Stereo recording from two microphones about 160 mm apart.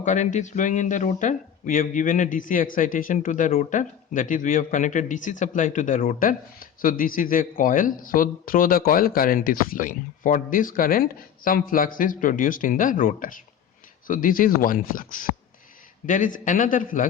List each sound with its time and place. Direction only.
0.0 s speech: 50° left (ahead or behind)